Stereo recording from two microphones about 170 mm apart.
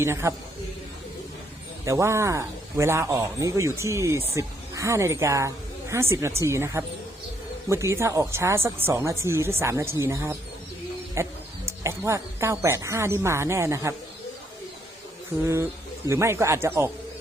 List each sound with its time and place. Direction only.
0.0 s speech: 15° right (ahead or behind)
1.8 s speech: 20° right (ahead or behind)
15.4 s speech: 15° right (ahead or behind)